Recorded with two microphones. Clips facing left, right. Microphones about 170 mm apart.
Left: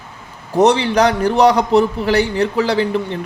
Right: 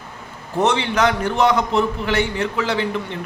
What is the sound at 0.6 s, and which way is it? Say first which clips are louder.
A man's voice: left 6 dB; 35° left (ahead or behind).